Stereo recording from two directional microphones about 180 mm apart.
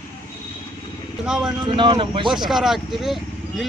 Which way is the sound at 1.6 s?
25° right (ahead or behind).